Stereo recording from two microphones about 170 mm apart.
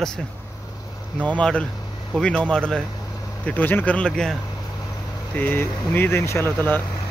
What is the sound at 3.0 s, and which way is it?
Vehicle, 20° left (ahead or behind).